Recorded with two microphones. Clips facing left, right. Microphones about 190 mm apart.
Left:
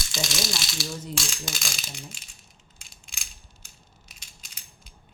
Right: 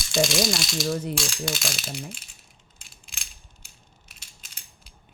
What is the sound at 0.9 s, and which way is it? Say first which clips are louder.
Speech: right 12 dB; 65° right (ahead or behind).